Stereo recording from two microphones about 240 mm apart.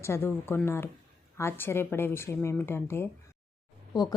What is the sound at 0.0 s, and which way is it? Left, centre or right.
Speech, centre.